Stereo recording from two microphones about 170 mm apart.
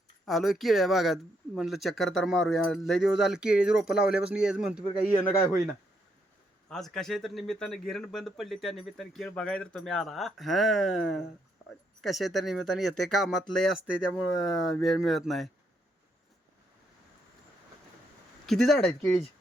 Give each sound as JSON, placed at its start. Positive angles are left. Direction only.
{"t": 0.3, "sound": "speech", "side_deg": 0}
{"t": 4.8, "sound": "a man's voice", "side_deg": 20}
{"t": 6.7, "sound": "speech", "side_deg": 5}
{"t": 18.4, "sound": "speech", "side_deg": 0}